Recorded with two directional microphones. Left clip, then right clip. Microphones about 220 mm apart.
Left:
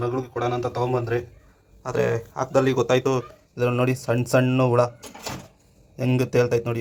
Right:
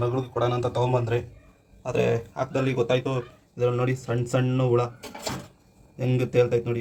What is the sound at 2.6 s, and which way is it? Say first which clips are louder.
Speech: left 4 dB; 10° left (ahead or behind).